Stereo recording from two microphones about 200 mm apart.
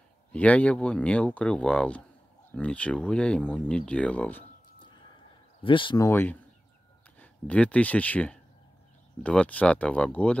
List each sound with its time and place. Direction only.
0.3 s speech: 5° left (ahead or behind)
5.6 s speech: 25° left (ahead or behind)
6.0 s speech: 10° left (ahead or behind)